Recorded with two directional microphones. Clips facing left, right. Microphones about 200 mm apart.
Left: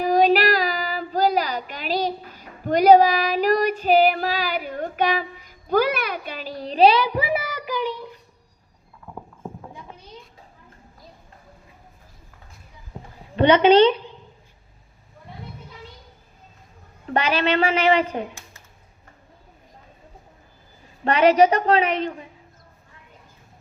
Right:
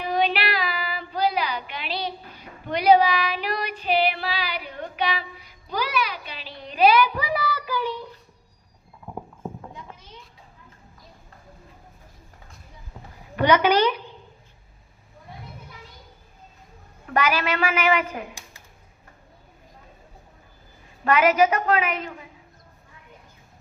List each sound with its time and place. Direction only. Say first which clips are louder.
0.0 s child singing: left 7 dB; 40° left (ahead or behind); by 7.9 s 15° left (ahead or behind)
9.0 s clip-clop: right 2 dB; 15° right (ahead or behind)
12.9 s a sound: left 5 dB; 25° left (ahead or behind)
13.3 s a woman's voice: left 5 dB; 25° left (ahead or behind)
17.1 s a woman's voice: left 2 dB; 30° left (ahead or behind)
21.0 s a woman's voice: left 3 dB; 30° left (ahead or behind)